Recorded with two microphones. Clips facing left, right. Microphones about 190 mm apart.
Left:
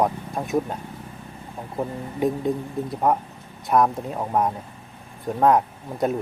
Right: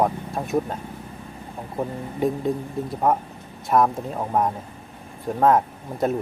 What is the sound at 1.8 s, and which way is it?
Speech, centre (ahead or behind).